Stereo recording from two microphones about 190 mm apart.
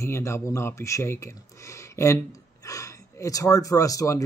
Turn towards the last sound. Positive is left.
turn(degrees=15)  # may be behind; listen again after turning